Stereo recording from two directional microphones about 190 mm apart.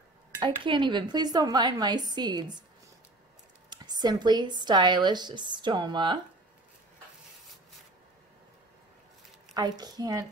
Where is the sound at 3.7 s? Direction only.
20° right (ahead or behind).